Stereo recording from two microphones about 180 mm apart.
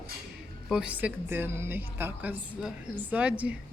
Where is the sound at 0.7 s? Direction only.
5° right (ahead or behind).